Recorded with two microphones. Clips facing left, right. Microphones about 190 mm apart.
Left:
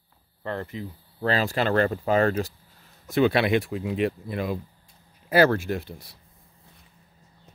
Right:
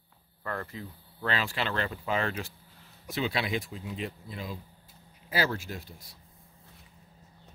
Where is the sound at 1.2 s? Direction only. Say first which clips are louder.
Left 7 dB; 40° left (ahead or behind).